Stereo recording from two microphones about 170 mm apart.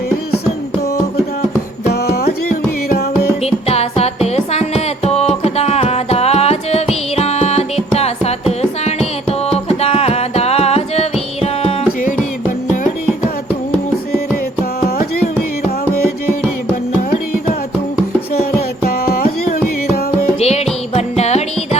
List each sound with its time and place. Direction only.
1.9 s music: 70° left (ahead or behind)
3.4 s music: 35° left (ahead or behind)
12.5 s music: 50° left (ahead or behind)
18.9 s music: 60° left (ahead or behind)
20.4 s music: 40° left (ahead or behind)